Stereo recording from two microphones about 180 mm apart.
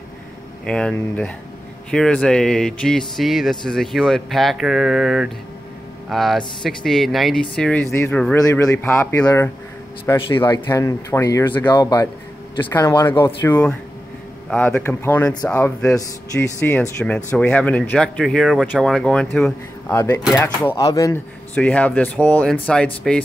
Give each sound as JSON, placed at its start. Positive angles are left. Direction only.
{"t": 0.7, "sound": "speech", "side_deg": 5}